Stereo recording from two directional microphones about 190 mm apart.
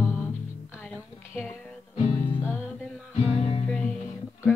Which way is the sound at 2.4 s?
15° left (ahead or behind).